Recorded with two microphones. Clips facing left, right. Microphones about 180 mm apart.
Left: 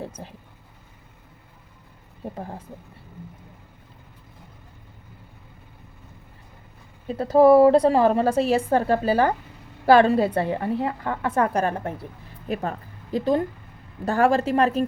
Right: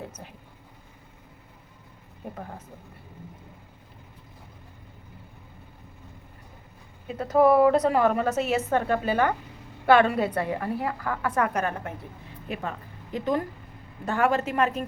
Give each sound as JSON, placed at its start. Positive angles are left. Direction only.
{"t": 0.2, "sound": "a woman's voice", "side_deg": 30}
{"t": 2.3, "sound": "a woman's voice", "side_deg": 30}
{"t": 7.1, "sound": "a woman's voice", "side_deg": 30}